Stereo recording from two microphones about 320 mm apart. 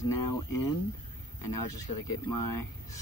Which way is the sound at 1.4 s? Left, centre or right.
Left.